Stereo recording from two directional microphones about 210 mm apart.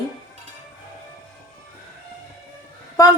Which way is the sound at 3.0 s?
15° left (ahead or behind).